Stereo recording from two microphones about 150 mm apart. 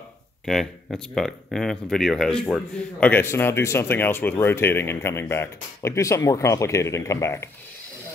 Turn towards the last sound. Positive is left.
turn(degrees=20)  # may be behind; listen again after turning